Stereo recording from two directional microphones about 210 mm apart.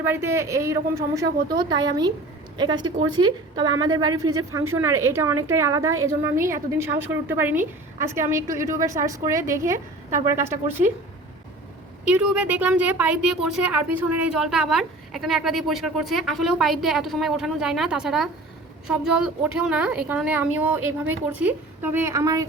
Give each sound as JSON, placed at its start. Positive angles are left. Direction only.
{"t": 0.0, "sound": "a woman's voice", "side_deg": -10}
{"t": 12.0, "sound": "speech", "side_deg": -5}